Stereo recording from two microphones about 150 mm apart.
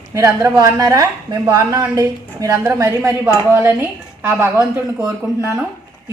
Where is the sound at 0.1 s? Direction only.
20° right (ahead or behind).